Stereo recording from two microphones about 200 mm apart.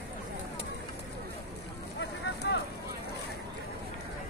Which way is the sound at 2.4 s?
60° left (ahead or behind).